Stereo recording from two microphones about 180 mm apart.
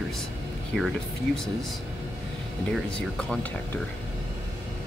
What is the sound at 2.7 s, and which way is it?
Speech, 5° left (ahead or behind).